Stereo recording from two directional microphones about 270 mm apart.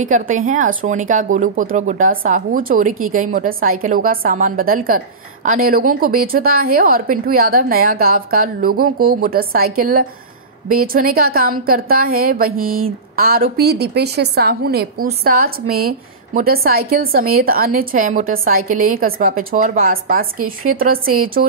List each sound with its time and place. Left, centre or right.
0.0 s a woman's voice: right